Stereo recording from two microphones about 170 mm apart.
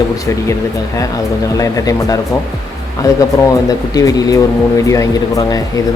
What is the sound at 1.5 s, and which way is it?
Speech, 20° left (ahead or behind).